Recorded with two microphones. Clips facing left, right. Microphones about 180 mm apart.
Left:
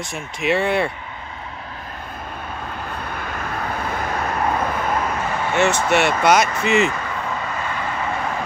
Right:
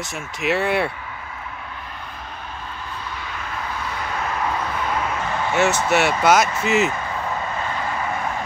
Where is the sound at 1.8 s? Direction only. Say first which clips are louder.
Left 2 dB; 45° left (ahead or behind).